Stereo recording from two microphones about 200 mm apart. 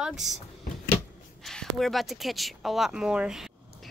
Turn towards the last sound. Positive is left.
turn(degrees=-5)  # may be behind; listen again after turning